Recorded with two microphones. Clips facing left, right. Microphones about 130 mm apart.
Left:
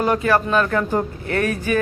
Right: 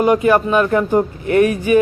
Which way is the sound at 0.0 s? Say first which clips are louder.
Right 5 dB; 15° right (ahead or behind).